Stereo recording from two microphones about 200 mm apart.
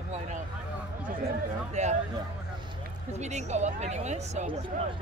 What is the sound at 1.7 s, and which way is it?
Speech, 35° right (ahead or behind).